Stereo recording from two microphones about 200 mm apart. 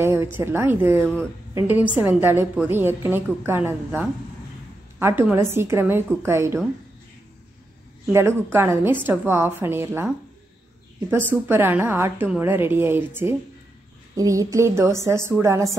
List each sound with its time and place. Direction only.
0.0 s a woman's voice: 10° right (ahead or behind)
8.1 s a woman's voice: 15° right (ahead or behind)